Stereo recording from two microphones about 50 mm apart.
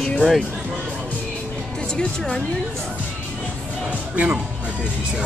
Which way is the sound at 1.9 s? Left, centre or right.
Centre.